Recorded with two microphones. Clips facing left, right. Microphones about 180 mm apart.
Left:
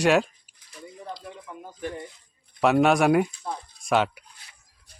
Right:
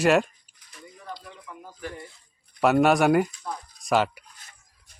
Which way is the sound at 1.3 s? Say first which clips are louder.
Left 3 dB; 20° left (ahead or behind).